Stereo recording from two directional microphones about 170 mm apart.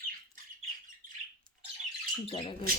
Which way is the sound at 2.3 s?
30° left (ahead or behind).